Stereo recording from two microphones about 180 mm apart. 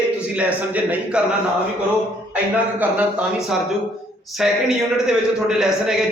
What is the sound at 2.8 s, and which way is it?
A man's voice, 5° right (ahead or behind).